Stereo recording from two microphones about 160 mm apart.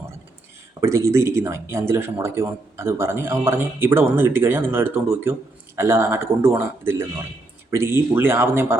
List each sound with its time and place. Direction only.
0.8 s speech: 20° right (ahead or behind)